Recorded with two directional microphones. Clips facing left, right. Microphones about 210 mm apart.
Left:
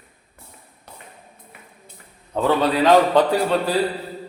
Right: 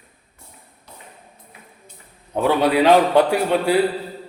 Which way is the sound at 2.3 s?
15° right (ahead or behind).